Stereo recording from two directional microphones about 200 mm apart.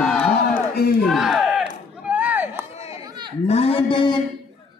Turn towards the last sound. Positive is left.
turn(degrees=25)  # may be behind; listen again after turning